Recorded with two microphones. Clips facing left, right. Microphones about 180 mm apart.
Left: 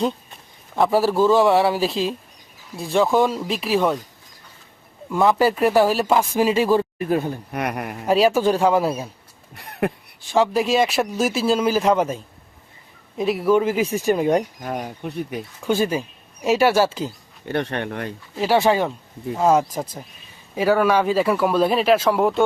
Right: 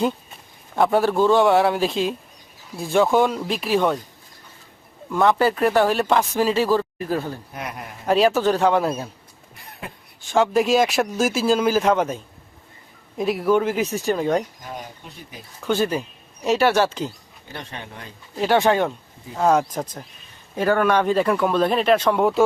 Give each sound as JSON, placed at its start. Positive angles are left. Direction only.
{"t": 0.8, "sound": "speech", "side_deg": 0}
{"t": 5.0, "sound": "speech", "side_deg": 5}
{"t": 7.5, "sound": "a man's voice", "side_deg": 70}
{"t": 8.0, "sound": "speech", "side_deg": 10}
{"t": 9.6, "sound": "a sound", "side_deg": 70}
{"t": 10.2, "sound": "speech", "side_deg": 0}
{"t": 14.6, "sound": "speech", "side_deg": 60}
{"t": 15.6, "sound": "speech", "side_deg": 10}
{"t": 17.4, "sound": "speech", "side_deg": 65}
{"t": 18.3, "sound": "speech", "side_deg": 5}